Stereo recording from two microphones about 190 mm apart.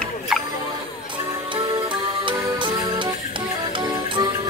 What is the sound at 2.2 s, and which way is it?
Music, 25° right (ahead or behind).